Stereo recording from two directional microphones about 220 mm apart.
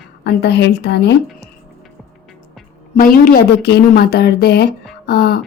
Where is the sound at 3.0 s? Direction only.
40° left (ahead or behind).